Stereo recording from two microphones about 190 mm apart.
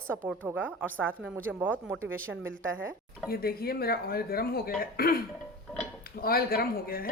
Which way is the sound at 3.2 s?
50° left (ahead or behind).